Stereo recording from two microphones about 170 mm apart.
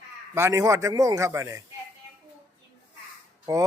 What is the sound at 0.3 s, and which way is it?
A man's voice, 15° right (ahead or behind).